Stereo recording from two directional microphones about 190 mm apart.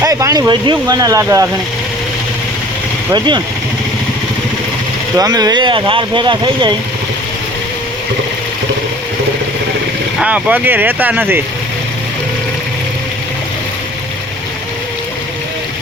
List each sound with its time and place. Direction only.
0.0 s speech: 15° right (ahead or behind)
3.1 s speech: 25° right (ahead or behind)
5.1 s speech: 20° right (ahead or behind)
10.2 s speech: 5° right (ahead or behind)